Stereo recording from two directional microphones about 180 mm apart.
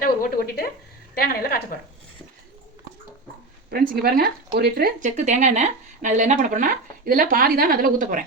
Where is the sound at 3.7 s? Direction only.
60° right (ahead or behind).